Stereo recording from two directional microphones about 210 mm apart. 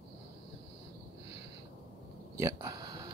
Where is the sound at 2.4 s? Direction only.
15° right (ahead or behind).